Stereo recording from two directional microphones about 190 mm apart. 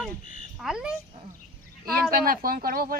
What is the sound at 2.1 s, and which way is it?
Speech, 50° right (ahead or behind).